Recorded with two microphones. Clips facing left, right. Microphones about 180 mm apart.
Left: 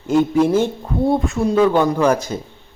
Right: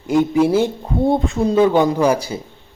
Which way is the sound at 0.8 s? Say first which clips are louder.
Right 1 dB; 20° right (ahead or behind).